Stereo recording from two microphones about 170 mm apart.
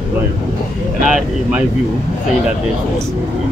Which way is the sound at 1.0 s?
5° right (ahead or behind).